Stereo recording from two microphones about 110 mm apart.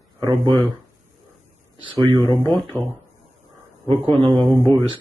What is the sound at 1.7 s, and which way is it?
Speech, 50° right (ahead or behind).